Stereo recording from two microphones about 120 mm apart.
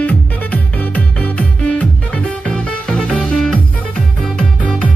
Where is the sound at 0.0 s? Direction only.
15° left (ahead or behind).